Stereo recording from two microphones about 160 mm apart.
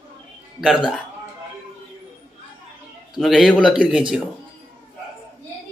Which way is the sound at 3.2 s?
Centre (ahead or behind).